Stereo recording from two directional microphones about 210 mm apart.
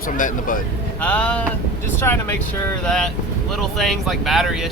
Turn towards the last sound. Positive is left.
turn(degrees=0)  # may be behind; listen again after turning